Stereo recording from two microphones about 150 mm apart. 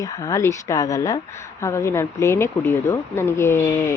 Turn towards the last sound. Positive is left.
turn(degrees=15)  # may be behind; listen again after turning